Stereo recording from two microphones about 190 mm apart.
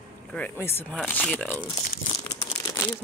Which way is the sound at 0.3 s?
10° left (ahead or behind).